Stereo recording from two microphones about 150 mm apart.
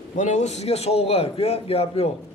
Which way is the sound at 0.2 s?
50° left (ahead or behind).